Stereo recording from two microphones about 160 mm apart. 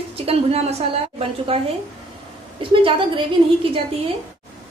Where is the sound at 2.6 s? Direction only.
30° right (ahead or behind).